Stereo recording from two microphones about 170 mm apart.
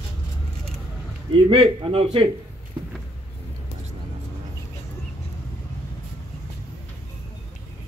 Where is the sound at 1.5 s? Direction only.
30° right (ahead or behind).